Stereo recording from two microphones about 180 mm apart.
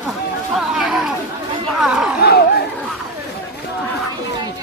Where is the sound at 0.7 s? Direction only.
5° right (ahead or behind).